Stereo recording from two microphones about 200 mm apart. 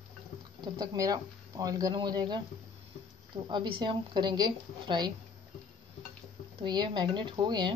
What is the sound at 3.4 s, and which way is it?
Speech, 25° right (ahead or behind).